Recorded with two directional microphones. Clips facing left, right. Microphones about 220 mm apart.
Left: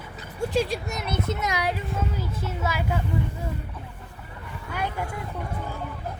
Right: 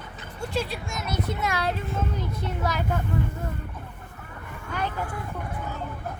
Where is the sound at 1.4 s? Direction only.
15° left (ahead or behind).